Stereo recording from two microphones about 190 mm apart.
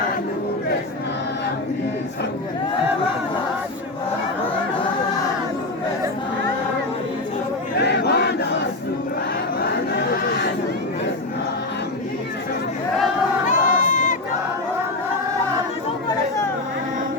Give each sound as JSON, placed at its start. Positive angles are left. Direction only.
{"t": 7.8, "sound": "crowd", "side_deg": 60}
{"t": 13.5, "sound": "crowd", "side_deg": 40}